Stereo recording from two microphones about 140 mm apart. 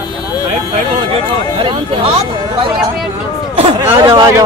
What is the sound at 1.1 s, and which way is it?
Speech, 40° right (ahead or behind).